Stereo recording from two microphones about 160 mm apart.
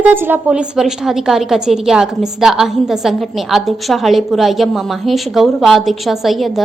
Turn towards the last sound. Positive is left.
turn(degrees=0)  # may be behind; listen again after turning